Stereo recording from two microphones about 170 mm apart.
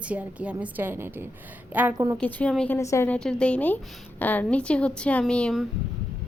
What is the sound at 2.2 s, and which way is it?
Speech, 5° left (ahead or behind).